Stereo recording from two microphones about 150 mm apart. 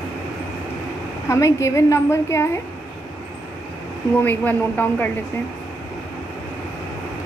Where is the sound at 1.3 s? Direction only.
20° left (ahead or behind).